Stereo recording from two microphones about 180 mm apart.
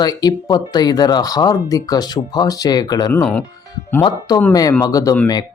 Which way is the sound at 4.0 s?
25° left (ahead or behind).